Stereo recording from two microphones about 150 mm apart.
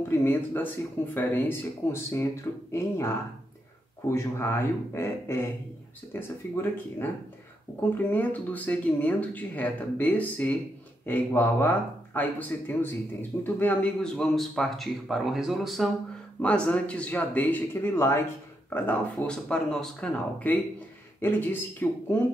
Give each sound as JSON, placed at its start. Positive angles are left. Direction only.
{"t": 0.2, "sound": "speech", "side_deg": 15}
{"t": 8.1, "sound": "speech", "side_deg": 10}